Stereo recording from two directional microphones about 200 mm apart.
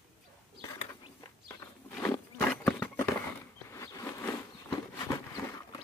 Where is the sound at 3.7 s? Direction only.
15° left (ahead or behind).